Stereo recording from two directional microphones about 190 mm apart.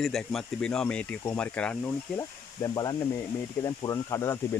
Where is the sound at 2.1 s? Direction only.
20° left (ahead or behind).